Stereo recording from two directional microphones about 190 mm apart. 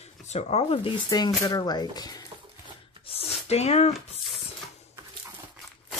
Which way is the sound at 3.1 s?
30° left (ahead or behind).